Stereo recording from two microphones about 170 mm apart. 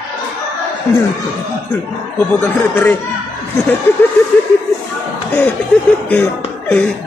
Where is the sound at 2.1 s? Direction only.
15° left (ahead or behind).